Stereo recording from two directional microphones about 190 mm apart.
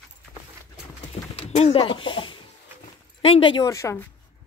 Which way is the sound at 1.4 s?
35° left (ahead or behind).